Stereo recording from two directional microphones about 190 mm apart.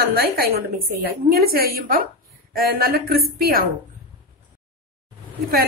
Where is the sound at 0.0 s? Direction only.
50° right (ahead or behind).